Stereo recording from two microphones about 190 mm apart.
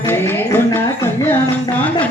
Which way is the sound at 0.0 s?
10° left (ahead or behind).